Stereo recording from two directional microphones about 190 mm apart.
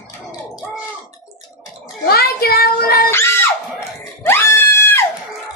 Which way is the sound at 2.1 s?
55° left (ahead or behind).